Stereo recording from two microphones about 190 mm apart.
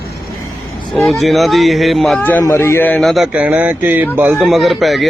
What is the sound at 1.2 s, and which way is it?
A man's voice, centre (ahead or behind).